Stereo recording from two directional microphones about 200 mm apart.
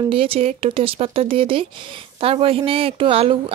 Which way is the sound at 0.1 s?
30° right (ahead or behind).